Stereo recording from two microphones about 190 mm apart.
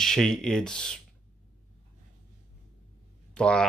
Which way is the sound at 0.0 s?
5° left (ahead or behind).